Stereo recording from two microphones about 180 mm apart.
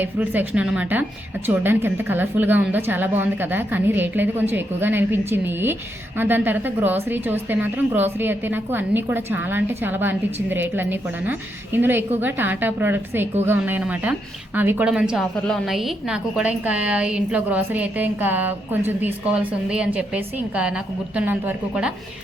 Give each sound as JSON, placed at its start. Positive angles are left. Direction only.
{"t": 0.0, "sound": "a woman's voice", "side_deg": -10}